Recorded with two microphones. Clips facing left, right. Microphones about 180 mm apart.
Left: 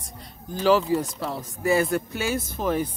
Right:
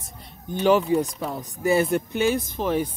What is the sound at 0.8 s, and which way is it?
Speech, centre (ahead or behind).